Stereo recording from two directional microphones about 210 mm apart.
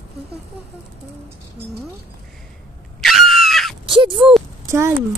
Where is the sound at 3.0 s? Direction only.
Centre (ahead or behind).